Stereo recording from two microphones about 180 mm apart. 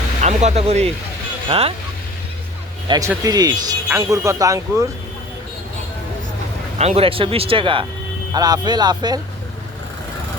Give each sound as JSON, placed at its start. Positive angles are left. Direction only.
{"t": 0.2, "sound": "speech", "side_deg": -40}
{"t": 2.8, "sound": "speech", "side_deg": -25}
{"t": 6.7, "sound": "speech", "side_deg": -35}